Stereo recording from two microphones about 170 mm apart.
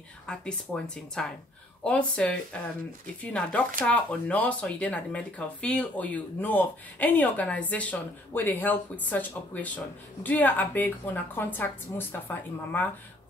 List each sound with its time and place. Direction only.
0.3 s speech: 5° left (ahead or behind)